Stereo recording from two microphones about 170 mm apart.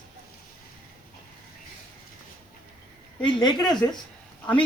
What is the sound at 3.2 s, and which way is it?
Speech, 25° left (ahead or behind).